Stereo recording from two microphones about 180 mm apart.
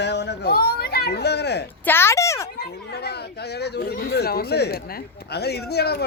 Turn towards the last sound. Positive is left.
turn(degrees=65)  # may be behind; listen again after turning